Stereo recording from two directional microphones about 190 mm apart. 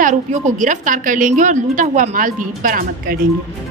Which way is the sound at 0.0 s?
40° right (ahead or behind).